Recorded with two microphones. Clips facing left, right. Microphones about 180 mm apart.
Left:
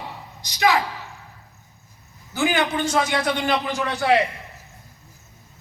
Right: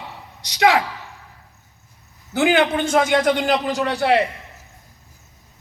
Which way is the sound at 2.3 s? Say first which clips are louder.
Right 5 dB; 65° right (ahead or behind).